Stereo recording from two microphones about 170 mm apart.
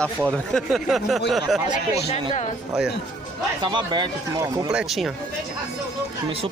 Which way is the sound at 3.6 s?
25° right (ahead or behind).